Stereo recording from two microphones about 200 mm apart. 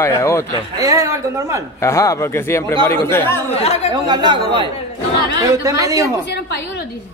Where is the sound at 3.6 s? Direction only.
30° left (ahead or behind).